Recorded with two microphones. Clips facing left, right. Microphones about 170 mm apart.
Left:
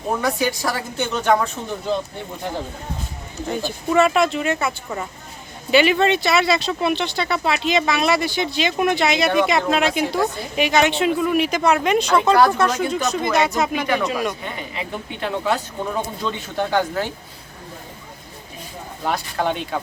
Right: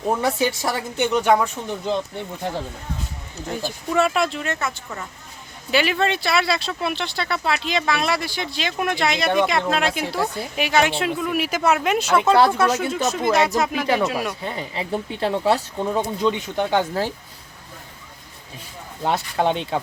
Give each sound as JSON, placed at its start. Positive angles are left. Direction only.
{"t": 0.2, "sound": "a woman's voice", "side_deg": -25}
{"t": 3.5, "sound": "speech", "side_deg": 0}
{"t": 5.7, "sound": "speech", "side_deg": 0}
{"t": 14.4, "sound": "speech", "side_deg": -35}
{"t": 16.2, "sound": "a woman's voice", "side_deg": -20}
{"t": 19.0, "sound": "a woman's voice", "side_deg": -25}